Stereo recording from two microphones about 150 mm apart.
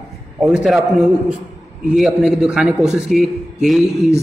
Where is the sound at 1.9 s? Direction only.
5° right (ahead or behind).